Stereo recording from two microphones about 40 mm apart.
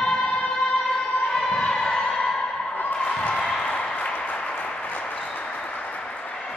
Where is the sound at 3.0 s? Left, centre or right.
Left.